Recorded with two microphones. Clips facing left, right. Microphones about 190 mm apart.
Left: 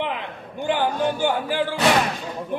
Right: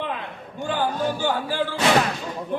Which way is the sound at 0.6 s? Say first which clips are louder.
Left 2 dB; 15° left (ahead or behind).